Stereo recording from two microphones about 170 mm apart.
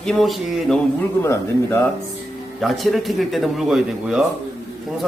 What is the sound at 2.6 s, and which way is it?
Speech, centre (ahead or behind).